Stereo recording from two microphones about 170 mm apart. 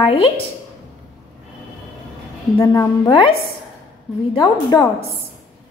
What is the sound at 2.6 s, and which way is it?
Speech, 20° left (ahead or behind).